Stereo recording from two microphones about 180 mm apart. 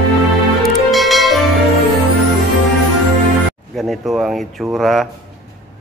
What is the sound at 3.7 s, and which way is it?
Speech, centre (ahead or behind).